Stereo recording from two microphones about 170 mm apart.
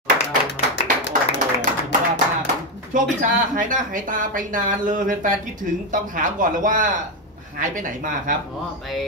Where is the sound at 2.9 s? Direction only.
50° right (ahead or behind).